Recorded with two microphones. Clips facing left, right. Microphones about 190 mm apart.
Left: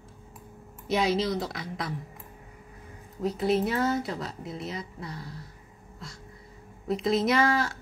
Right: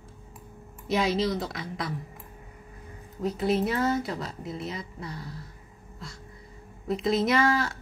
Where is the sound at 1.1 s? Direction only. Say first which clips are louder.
Even; centre (ahead or behind).